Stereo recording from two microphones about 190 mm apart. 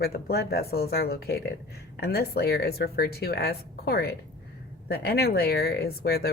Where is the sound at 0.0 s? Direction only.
55° left (ahead or behind).